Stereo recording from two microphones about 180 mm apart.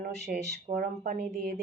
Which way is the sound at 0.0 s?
65° right (ahead or behind).